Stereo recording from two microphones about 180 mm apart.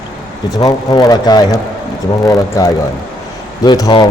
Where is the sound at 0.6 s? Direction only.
20° left (ahead or behind).